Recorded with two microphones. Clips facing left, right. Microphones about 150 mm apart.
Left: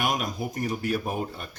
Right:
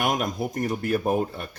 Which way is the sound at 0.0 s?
50° right (ahead or behind).